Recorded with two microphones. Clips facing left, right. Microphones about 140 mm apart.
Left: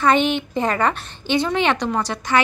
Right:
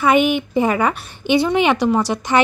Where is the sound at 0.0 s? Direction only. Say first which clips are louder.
Right 2 dB; 10° right (ahead or behind).